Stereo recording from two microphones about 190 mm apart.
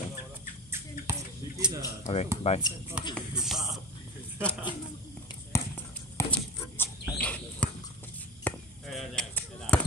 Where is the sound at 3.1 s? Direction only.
Centre (ahead or behind).